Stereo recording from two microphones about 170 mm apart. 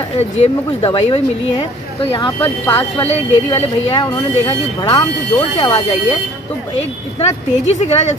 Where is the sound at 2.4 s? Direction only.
10° left (ahead or behind).